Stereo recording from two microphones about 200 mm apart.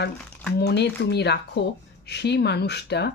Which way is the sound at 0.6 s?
55° left (ahead or behind).